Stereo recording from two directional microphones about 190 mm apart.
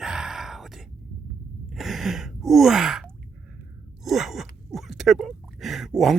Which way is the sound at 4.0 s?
Centre (ahead or behind).